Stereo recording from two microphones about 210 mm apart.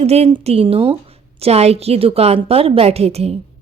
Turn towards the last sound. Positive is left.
turn(degrees=-30)  # may be behind; listen again after turning